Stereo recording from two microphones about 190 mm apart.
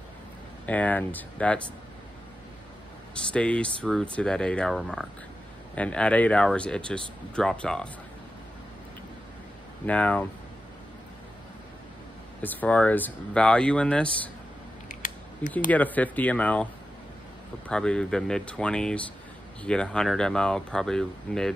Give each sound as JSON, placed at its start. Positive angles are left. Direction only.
{"t": 0.7, "sound": "speech", "side_deg": 10}
{"t": 3.2, "sound": "speech", "side_deg": 5}
{"t": 9.8, "sound": "speech", "side_deg": 5}
{"t": 12.4, "sound": "speech", "side_deg": 10}
{"t": 14.9, "sound": "a sound", "side_deg": 40}
{"t": 15.7, "sound": "speech", "side_deg": 10}
{"t": 17.6, "sound": "speech", "side_deg": 5}